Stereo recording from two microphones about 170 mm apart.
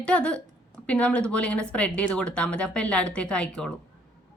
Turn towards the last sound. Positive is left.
turn(degrees=5)  # may be behind; listen again after turning